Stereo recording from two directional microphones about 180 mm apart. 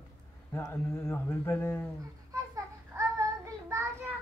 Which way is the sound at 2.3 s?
20° right (ahead or behind).